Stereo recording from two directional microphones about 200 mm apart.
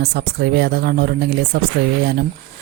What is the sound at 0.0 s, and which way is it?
Speech, 55° right (ahead or behind).